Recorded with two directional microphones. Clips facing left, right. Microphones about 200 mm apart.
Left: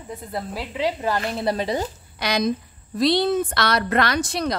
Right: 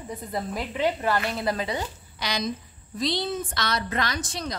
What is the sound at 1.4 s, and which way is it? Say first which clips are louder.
Speech: left 4 dB; 30° left (ahead or behind).